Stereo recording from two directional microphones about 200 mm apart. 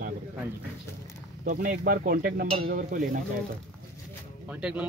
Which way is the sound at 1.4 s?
40° right (ahead or behind).